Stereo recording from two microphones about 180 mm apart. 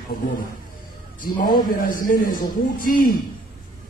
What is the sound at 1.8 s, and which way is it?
Speech, 50° left (ahead or behind).